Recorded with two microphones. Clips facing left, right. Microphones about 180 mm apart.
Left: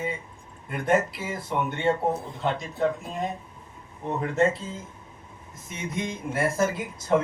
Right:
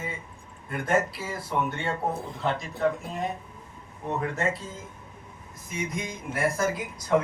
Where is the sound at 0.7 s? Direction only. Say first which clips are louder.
Left 2 dB; 20° left (ahead or behind).